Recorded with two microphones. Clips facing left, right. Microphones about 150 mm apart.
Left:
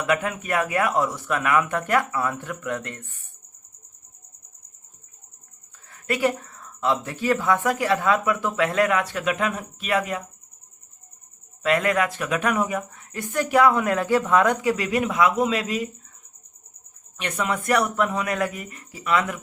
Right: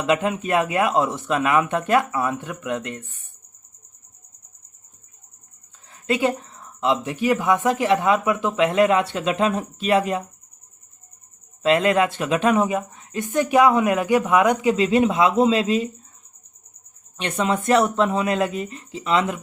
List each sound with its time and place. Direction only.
0.0 s speech: 25° right (ahead or behind)
5.9 s speech: 20° right (ahead or behind)
11.6 s speech: 25° right (ahead or behind)
17.2 s speech: 25° right (ahead or behind)